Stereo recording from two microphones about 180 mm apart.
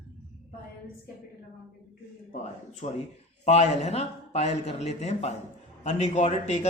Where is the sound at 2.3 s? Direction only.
40° left (ahead or behind).